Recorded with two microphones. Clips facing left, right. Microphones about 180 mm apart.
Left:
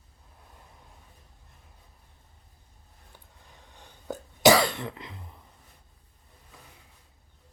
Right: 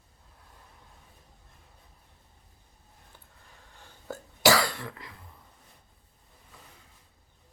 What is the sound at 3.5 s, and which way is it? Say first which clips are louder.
Cough: left 2 dB; 15° left (ahead or behind).